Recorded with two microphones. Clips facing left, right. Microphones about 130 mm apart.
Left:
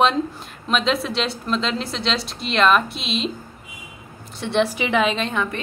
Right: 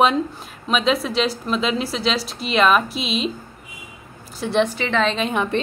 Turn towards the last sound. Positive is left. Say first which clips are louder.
# right 8 dB
turn(degrees=-25)  # may be behind; listen again after turning